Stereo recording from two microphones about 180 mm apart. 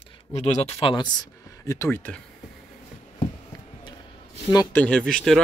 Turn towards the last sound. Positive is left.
turn(degrees=5)  # may be behind; listen again after turning